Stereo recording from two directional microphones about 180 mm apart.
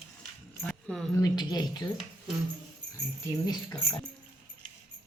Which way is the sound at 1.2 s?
20° left (ahead or behind).